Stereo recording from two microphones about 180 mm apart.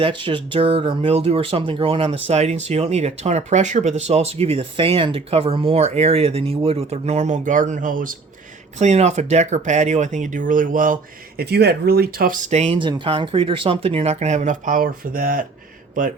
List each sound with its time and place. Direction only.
0.0 s speech: 30° right (ahead or behind); by 8.1 s 50° right (ahead or behind)
8.8 s speech: 40° right (ahead or behind)
11.3 s speech: 65° right (ahead or behind)
12.5 s speech: 35° right (ahead or behind); by 15.4 s 50° right (ahead or behind)